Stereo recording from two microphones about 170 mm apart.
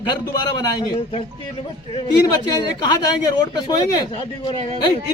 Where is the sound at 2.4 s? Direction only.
25° left (ahead or behind).